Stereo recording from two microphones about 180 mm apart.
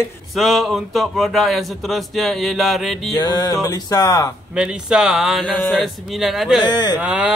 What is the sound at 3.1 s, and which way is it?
Music, 20° left (ahead or behind).